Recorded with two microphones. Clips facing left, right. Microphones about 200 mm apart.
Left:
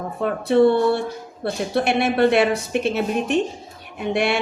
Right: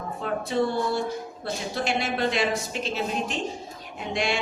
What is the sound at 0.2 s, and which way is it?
Speech, 60° left (ahead or behind).